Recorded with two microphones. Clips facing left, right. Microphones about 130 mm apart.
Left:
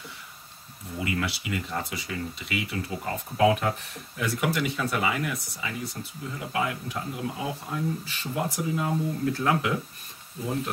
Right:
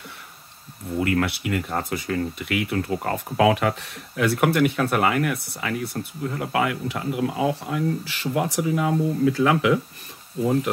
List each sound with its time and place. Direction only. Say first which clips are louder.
0.9 s speech: right 7 dB; 55° right (ahead or behind); by 9.8 s 90° right